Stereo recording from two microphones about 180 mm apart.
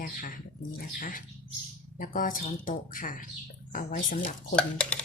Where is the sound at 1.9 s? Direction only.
50° left (ahead or behind).